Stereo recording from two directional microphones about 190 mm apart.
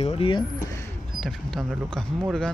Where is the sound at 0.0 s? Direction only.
30° left (ahead or behind).